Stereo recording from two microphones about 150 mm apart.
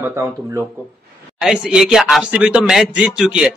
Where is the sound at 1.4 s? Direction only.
5° right (ahead or behind).